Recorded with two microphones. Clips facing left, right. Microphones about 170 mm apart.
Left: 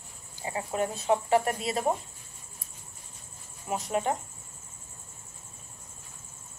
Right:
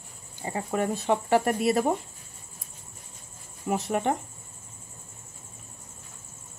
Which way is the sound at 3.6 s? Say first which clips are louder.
Right 3 dB; 60° right (ahead or behind).